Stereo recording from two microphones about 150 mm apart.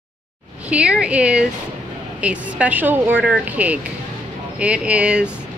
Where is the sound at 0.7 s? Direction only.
5° right (ahead or behind).